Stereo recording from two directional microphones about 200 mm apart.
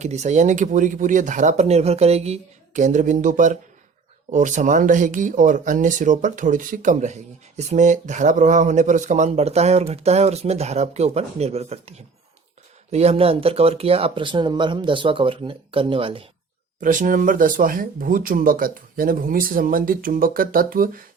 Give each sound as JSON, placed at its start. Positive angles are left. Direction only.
{"t": 0.0, "sound": "speech", "side_deg": -35}
{"t": 16.8, "sound": "speech", "side_deg": -40}